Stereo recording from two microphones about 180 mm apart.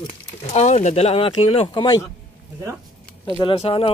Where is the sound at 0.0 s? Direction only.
40° left (ahead or behind); by 2.0 s 25° left (ahead or behind).